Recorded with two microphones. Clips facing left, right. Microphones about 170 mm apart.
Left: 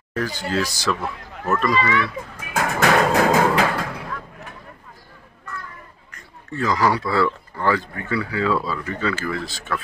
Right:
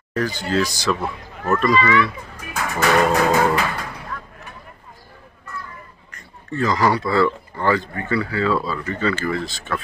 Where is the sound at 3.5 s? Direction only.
75° left (ahead or behind).